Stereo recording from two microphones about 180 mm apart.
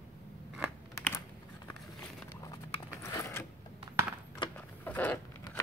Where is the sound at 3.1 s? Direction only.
15° left (ahead or behind).